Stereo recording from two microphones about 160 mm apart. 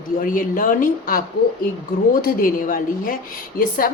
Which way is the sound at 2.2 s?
60° left (ahead or behind).